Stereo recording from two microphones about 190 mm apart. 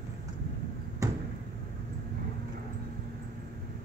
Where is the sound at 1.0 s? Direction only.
15° right (ahead or behind).